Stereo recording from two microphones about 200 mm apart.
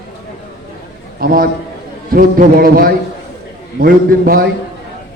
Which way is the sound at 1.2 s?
45° right (ahead or behind).